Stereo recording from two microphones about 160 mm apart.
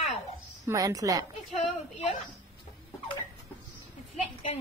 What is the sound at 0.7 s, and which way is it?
Speech, 20° right (ahead or behind).